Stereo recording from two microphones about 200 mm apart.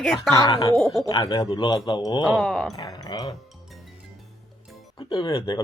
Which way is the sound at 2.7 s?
20° left (ahead or behind).